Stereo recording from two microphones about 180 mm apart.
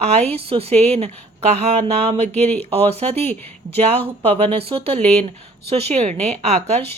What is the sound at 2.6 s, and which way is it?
Speech, 35° right (ahead or behind).